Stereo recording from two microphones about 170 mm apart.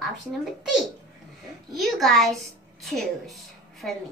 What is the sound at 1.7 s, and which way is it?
A child's voice, centre (ahead or behind).